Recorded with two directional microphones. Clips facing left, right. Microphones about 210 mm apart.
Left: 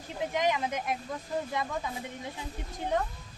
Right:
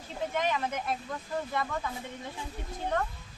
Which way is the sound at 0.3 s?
15° left (ahead or behind).